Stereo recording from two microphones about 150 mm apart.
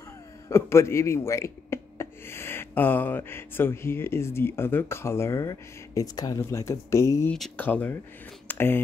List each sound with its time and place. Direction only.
0.5 s speech: 15° left (ahead or behind)
7.2 s speech: 5° left (ahead or behind)